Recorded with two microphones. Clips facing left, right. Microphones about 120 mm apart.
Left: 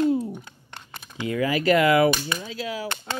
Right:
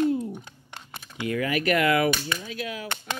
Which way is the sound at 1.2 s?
25° left (ahead or behind).